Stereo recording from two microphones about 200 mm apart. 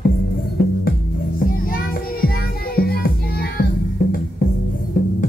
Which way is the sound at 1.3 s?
45° left (ahead or behind).